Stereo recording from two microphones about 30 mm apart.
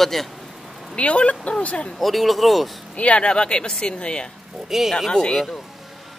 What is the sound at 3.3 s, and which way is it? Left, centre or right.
Speech, left.